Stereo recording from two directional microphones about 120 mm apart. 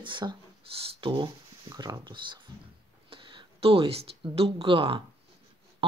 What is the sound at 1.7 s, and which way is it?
Speech, 30° right (ahead or behind).